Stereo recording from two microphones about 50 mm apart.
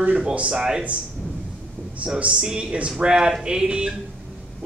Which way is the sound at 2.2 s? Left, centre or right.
Right.